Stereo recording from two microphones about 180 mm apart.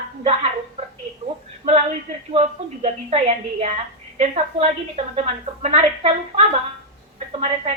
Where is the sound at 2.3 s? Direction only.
35° right (ahead or behind).